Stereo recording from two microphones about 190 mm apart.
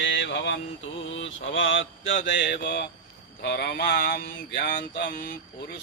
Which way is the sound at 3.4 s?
60° left (ahead or behind).